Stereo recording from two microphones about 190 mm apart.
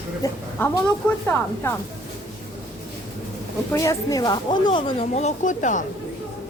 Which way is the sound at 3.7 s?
15° left (ahead or behind).